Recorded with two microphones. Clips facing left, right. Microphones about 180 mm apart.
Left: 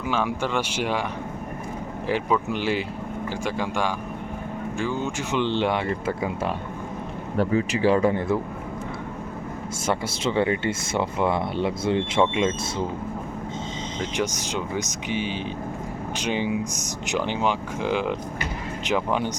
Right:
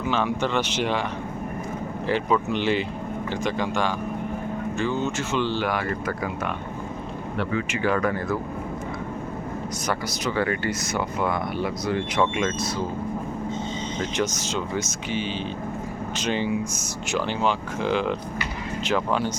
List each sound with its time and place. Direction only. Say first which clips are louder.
0.0 s speech: right 1 dB; 10° left (ahead or behind)
2.0 s speech: right 1 dB; 10° left (ahead or behind)
7.3 s speech: left 5 dB; 35° left (ahead or behind)
9.8 s speech: left 3 dB; 25° left (ahead or behind)
14.2 s speech: even; 15° left (ahead or behind)